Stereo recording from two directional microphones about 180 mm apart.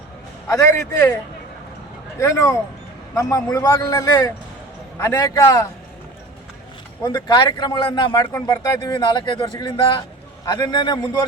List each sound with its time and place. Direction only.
0.4 s a man's voice: 15° left (ahead or behind)
7.0 s a man's voice: 20° left (ahead or behind)